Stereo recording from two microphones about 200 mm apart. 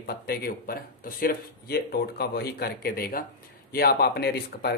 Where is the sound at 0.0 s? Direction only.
50° left (ahead or behind).